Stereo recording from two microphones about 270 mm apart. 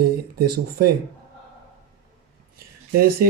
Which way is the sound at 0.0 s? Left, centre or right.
Right.